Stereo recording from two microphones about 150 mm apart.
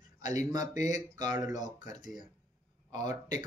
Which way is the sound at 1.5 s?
55° left (ahead or behind).